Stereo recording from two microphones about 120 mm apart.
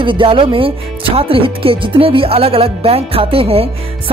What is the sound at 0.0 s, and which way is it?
Speech, 45° right (ahead or behind).